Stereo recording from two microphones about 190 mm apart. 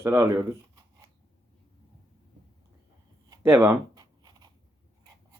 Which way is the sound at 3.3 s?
15° right (ahead or behind).